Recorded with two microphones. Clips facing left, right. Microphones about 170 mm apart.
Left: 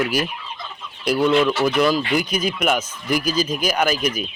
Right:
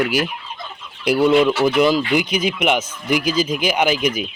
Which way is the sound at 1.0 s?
10° right (ahead or behind).